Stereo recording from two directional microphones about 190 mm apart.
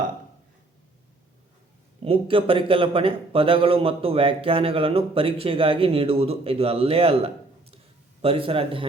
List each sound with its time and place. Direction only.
2.0 s a man's voice: 30° right (ahead or behind)
8.2 s a man's voice: 30° right (ahead or behind)